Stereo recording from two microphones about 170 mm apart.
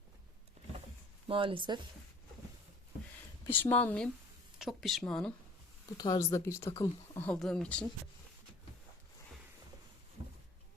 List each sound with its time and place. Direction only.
1.3 s speech: 30° right (ahead or behind)
3.4 s speech: 10° left (ahead or behind)
6.0 s speech: 20° left (ahead or behind)
7.2 s speech: 5° left (ahead or behind)